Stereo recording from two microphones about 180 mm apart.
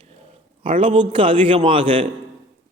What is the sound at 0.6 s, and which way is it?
A man's voice, 30° right (ahead or behind).